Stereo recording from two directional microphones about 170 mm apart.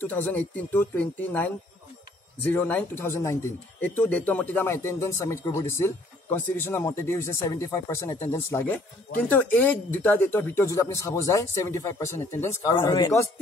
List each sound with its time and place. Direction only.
0.0 s speech: 10° left (ahead or behind)